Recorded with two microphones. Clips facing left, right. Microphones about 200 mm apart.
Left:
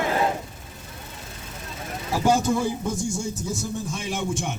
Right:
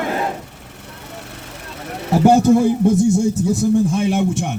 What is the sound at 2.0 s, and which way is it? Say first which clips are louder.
A man's voice: right 9 dB; 60° right (ahead or behind).